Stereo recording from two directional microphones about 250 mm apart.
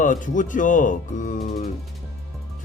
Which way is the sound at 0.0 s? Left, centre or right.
Left.